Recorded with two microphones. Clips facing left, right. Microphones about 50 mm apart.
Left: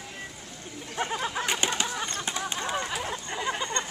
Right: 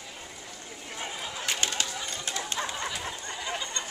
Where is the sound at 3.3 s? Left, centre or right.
Left.